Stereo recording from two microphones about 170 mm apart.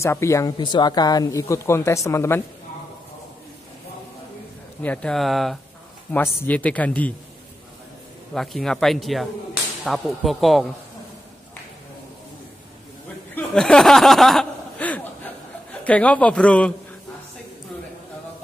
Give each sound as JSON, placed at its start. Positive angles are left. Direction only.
{"t": 0.0, "sound": "speech", "side_deg": 15}
{"t": 4.8, "sound": "speech", "side_deg": 5}
{"t": 8.4, "sound": "speech", "side_deg": 5}
{"t": 13.3, "sound": "chuckle", "side_deg": 5}
{"t": 15.8, "sound": "speech", "side_deg": 10}